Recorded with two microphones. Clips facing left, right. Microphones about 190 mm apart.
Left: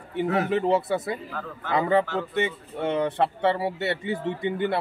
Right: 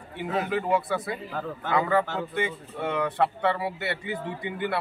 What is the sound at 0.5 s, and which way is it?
Speech, 25° left (ahead or behind).